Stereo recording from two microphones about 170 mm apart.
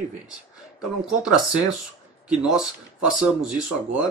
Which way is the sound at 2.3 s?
5° right (ahead or behind).